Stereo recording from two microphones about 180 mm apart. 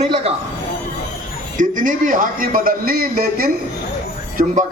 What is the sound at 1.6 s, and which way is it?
A man's voice, 45° right (ahead or behind).